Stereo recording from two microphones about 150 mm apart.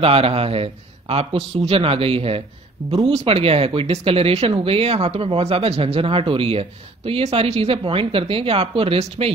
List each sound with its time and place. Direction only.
0.0 s speech: 40° right (ahead or behind)